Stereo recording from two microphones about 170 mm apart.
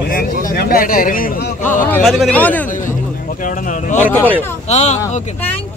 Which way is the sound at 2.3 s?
10° left (ahead or behind).